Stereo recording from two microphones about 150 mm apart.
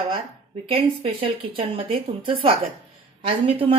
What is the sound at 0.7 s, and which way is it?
Speech, 40° right (ahead or behind).